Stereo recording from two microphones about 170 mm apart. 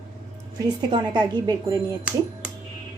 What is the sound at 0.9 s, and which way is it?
Speech, 25° right (ahead or behind).